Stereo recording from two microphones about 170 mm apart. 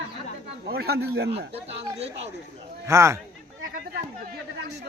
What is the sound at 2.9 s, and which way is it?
Speech, 15° right (ahead or behind).